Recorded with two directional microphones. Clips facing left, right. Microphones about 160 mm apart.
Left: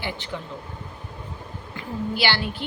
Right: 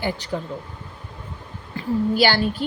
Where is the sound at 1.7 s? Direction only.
45° right (ahead or behind).